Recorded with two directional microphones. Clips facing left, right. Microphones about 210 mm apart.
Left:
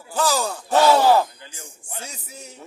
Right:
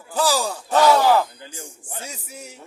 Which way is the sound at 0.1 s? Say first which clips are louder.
Right 1 dB; 10° right (ahead or behind).